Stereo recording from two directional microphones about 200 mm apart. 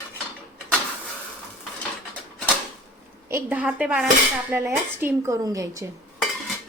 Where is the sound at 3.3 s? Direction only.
10° right (ahead or behind).